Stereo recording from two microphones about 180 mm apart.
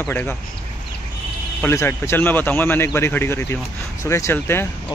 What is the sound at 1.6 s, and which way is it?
Speech, 15° left (ahead or behind).